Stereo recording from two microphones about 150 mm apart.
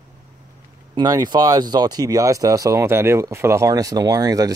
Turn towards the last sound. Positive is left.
turn(degrees=-25)  # may be behind; listen again after turning